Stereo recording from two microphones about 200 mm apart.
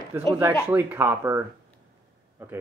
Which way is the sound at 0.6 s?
10° right (ahead or behind).